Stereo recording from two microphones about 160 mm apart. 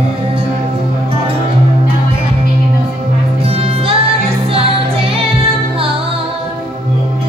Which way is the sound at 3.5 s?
35° right (ahead or behind).